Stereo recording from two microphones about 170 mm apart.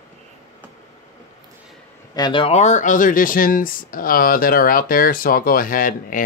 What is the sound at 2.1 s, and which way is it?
Speech, 25° left (ahead or behind).